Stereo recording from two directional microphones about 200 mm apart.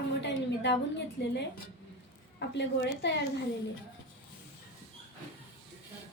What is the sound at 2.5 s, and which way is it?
Speech, 60° left (ahead or behind).